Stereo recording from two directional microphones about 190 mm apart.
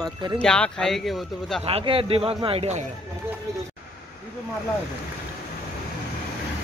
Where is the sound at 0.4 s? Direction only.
5° left (ahead or behind).